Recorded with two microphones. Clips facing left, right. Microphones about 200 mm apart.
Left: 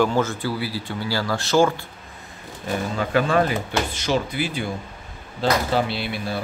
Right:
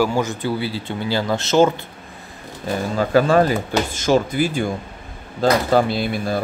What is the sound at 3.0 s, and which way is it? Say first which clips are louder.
Speech: right 5 dB; 35° right (ahead or behind).